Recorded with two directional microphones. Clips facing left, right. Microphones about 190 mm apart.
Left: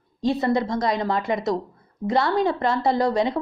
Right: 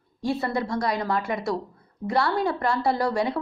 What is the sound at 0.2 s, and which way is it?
A woman's voice, 20° left (ahead or behind).